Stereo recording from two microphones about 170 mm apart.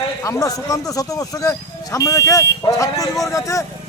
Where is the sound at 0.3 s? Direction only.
20° left (ahead or behind).